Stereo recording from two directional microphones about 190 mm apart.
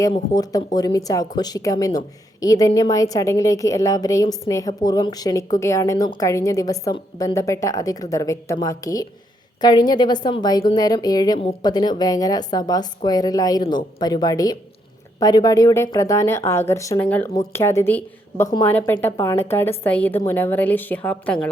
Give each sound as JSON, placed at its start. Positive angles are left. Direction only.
{"t": 0.1, "sound": "a woman's voice", "side_deg": 20}